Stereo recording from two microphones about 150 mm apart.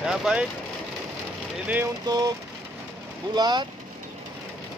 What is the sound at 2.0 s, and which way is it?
Speech, 25° right (ahead or behind).